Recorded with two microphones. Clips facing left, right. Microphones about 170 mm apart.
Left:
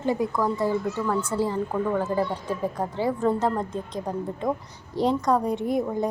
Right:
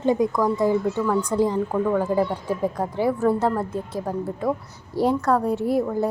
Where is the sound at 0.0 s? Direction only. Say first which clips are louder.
Right 4 dB; 20° right (ahead or behind).